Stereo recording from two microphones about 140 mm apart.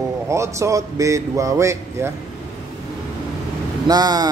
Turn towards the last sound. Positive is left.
turn(degrees=-30)  # may be behind; listen again after turning